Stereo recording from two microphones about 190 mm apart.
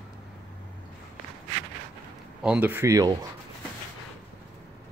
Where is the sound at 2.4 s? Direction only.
10° right (ahead or behind).